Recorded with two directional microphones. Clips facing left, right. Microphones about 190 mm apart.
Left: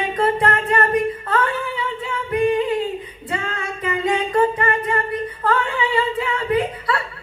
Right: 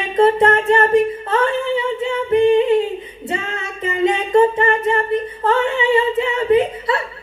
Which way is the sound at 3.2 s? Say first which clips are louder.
Right 2 dB; 25° right (ahead or behind).